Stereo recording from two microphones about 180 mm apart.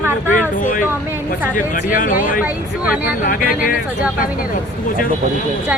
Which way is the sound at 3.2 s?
55° left (ahead or behind).